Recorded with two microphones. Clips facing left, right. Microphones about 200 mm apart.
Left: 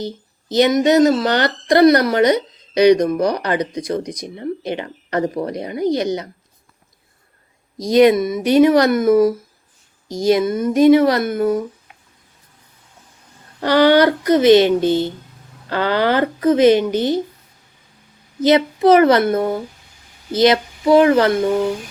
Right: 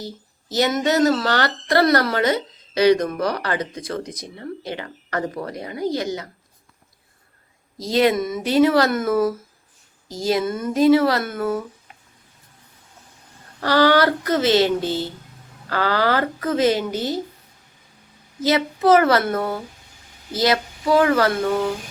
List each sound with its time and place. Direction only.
0.0 s speech: 20° left (ahead or behind)
7.8 s speech: 15° left (ahead or behind)
13.6 s a woman's voice: 20° left (ahead or behind)
18.4 s speech: 15° left (ahead or behind)
20.3 s speech: 20° left (ahead or behind)